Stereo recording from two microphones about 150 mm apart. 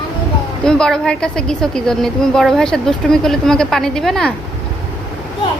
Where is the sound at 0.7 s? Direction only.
5° left (ahead or behind).